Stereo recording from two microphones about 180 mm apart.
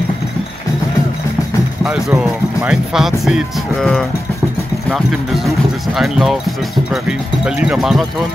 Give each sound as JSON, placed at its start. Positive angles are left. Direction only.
{"t": 1.9, "sound": "speech", "side_deg": -5}